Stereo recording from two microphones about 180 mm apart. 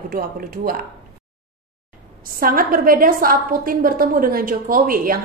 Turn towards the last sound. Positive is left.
turn(degrees=-50)  # may be behind; listen again after turning